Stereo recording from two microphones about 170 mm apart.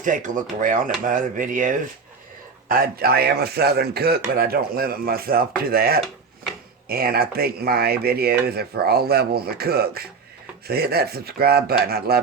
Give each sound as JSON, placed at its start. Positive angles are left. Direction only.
{"t": 0.0, "sound": "speech", "side_deg": -50}